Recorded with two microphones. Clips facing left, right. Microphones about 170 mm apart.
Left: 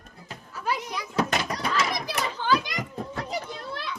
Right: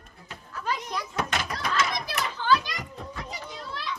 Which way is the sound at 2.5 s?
20° left (ahead or behind).